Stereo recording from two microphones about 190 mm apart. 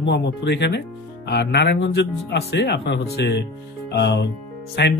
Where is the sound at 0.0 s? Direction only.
65° left (ahead or behind).